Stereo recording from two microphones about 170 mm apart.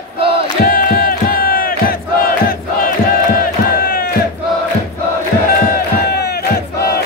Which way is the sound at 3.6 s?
60° left (ahead or behind).